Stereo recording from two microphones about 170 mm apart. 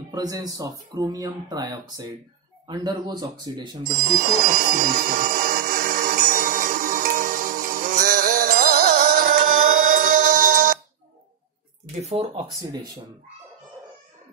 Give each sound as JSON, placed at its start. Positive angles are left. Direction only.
{"t": 0.1, "sound": "speech", "side_deg": -20}
{"t": 4.0, "sound": "a sound", "side_deg": -55}
{"t": 12.0, "sound": "speech", "side_deg": -35}